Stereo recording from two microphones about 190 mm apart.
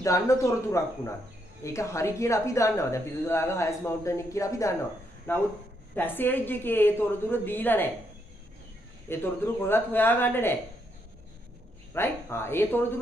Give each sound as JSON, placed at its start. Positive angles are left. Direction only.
{"t": 0.0, "sound": "a woman's voice", "side_deg": 15}
{"t": 9.1, "sound": "a woman's voice", "side_deg": 10}
{"t": 11.9, "sound": "a woman's voice", "side_deg": 10}